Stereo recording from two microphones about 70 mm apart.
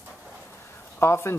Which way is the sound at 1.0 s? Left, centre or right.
Left.